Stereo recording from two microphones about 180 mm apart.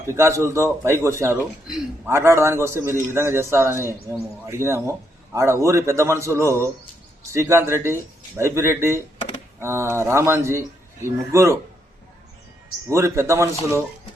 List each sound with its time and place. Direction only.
0.1 s a man's voice: 15° right (ahead or behind)
1.6 s a man's voice: centre (ahead or behind)
2.0 s a man's voice: 15° right (ahead or behind)
12.9 s a man's voice: 15° right (ahead or behind)